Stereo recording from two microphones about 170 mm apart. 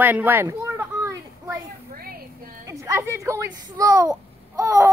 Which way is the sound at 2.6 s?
15° right (ahead or behind).